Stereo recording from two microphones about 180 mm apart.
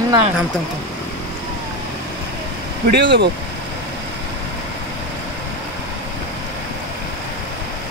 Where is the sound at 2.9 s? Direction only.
70° right (ahead or behind).